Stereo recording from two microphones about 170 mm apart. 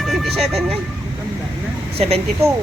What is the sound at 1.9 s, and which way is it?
Speech, 35° right (ahead or behind).